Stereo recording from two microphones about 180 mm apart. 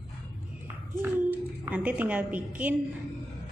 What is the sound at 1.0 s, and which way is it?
A woman's voice, 10° right (ahead or behind).